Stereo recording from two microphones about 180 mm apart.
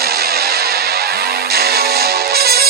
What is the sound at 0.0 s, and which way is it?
Music, 60° right (ahead or behind).